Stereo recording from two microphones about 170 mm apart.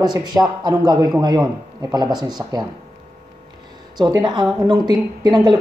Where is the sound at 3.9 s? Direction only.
25° right (ahead or behind).